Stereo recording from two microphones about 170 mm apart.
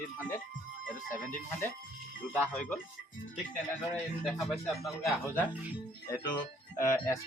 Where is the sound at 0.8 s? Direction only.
50° left (ahead or behind).